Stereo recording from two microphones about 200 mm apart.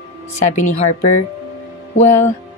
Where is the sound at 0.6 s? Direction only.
35° left (ahead or behind).